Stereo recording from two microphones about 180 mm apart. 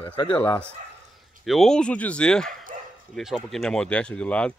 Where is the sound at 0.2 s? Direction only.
25° left (ahead or behind).